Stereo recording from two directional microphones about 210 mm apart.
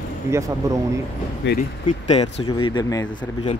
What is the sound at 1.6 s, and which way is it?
Speech, 30° left (ahead or behind).